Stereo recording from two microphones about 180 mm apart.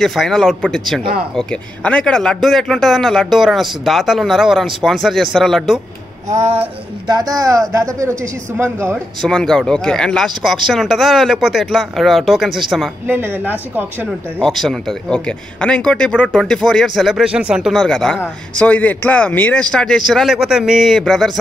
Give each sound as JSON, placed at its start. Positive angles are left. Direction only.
{"t": 0.0, "sound": "speech", "side_deg": 0}
{"t": 6.3, "sound": "speech", "side_deg": -40}
{"t": 7.1, "sound": "speech", "side_deg": -20}
{"t": 9.2, "sound": "speech", "side_deg": 5}
{"t": 13.0, "sound": "speech", "side_deg": -10}
{"t": 14.4, "sound": "speech", "side_deg": 0}